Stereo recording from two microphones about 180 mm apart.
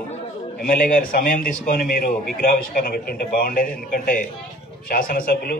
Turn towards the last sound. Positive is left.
turn(degrees=55)  # may be behind; listen again after turning